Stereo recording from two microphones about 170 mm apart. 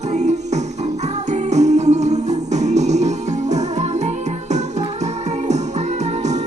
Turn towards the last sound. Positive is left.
turn(degrees=-40)  # may be behind; listen again after turning